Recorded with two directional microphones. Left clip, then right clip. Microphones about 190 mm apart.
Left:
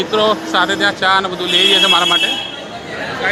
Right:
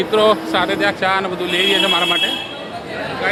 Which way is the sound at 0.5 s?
Centre (ahead or behind).